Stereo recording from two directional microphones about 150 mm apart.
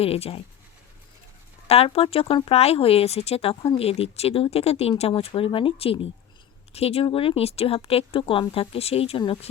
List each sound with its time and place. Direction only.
0.0 s speech: 40° left (ahead or behind)
1.6 s speech: 45° left (ahead or behind)